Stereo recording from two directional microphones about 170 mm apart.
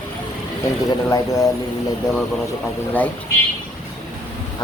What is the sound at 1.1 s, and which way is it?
Speech, 20° left (ahead or behind).